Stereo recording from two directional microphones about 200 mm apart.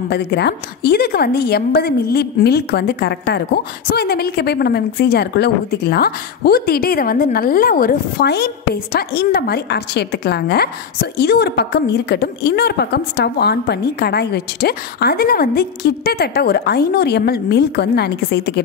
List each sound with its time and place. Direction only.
0.1 s a woman's voice: 55° left (ahead or behind)